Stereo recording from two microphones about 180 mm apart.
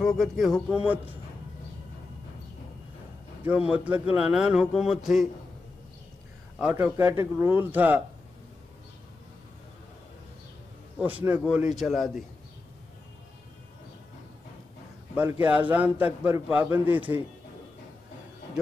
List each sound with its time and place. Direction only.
0.0 s a man's voice: centre (ahead or behind)
3.4 s a man's voice: 5° right (ahead or behind)
6.6 s a man's voice: 10° right (ahead or behind)
11.0 s a man's voice: 10° right (ahead or behind)
15.4 s a man's voice: 10° right (ahead or behind)